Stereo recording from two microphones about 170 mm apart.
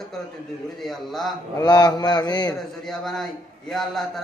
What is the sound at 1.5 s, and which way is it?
Mantra, 25° left (ahead or behind).